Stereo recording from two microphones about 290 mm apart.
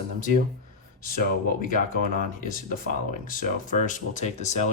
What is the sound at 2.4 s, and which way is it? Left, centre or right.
Speech, left.